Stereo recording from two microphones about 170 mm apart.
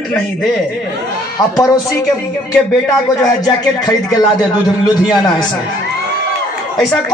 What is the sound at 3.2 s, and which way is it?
Speech, 20° left (ahead or behind).